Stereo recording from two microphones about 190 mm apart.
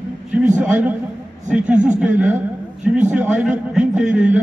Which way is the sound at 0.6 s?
5° right (ahead or behind).